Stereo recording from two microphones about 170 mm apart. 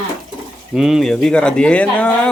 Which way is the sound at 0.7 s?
Centre (ahead or behind).